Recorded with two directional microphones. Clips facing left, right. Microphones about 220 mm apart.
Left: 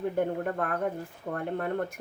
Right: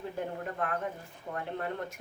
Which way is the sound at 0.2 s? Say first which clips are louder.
Left 5 dB; 55° left (ahead or behind).